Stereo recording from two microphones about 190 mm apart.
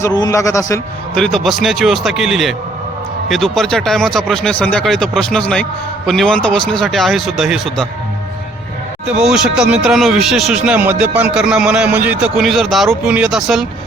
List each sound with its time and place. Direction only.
0.0 s a man's voice: 20° left (ahead or behind)
1.1 s speech: centre (ahead or behind)
9.0 s speech: 5° right (ahead or behind)